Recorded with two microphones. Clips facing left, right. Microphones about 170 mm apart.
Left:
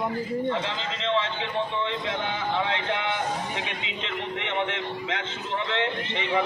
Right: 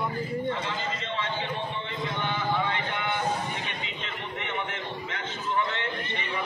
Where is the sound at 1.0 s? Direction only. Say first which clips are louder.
Left 5 dB; 90° left.